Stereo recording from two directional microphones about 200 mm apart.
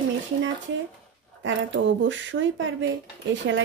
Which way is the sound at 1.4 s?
65° right (ahead or behind).